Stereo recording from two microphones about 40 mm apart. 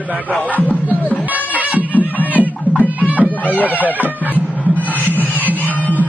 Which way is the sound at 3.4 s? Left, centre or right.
Left.